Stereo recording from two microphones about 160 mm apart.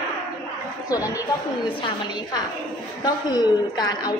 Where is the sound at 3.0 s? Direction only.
25° left (ahead or behind).